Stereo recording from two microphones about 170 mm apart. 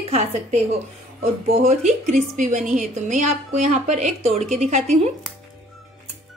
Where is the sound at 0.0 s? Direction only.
35° right (ahead or behind).